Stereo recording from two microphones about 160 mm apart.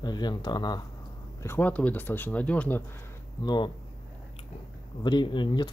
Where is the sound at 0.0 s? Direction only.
25° left (ahead or behind).